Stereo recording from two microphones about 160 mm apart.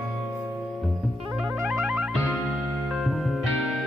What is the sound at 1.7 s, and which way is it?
Music, centre (ahead or behind).